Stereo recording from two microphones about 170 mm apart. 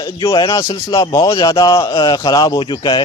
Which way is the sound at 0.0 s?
25° left (ahead or behind).